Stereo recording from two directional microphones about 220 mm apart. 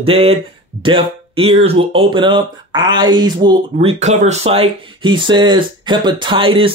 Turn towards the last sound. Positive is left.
turn(degrees=-25)  # may be behind; listen again after turning